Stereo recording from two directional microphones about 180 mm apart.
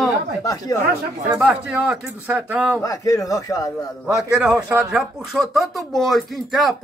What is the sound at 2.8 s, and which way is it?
Speech, 20° left (ahead or behind).